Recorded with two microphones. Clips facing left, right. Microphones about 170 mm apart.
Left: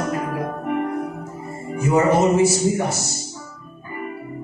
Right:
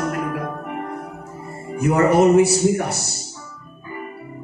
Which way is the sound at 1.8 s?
60° right (ahead or behind).